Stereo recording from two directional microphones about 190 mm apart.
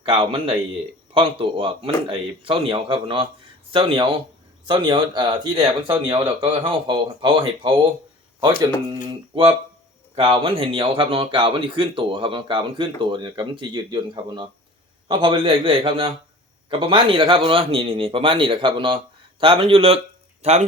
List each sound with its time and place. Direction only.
0.0 s speech: 30° right (ahead or behind)
9.0 s speech: 30° right (ahead or behind)